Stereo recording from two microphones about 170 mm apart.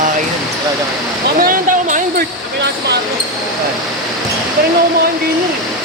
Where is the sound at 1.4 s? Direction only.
55° right (ahead or behind).